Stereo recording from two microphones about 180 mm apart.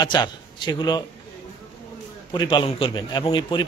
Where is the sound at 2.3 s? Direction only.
25° left (ahead or behind).